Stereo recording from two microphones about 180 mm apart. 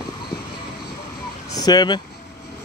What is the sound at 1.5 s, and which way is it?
Speech, 20° left (ahead or behind).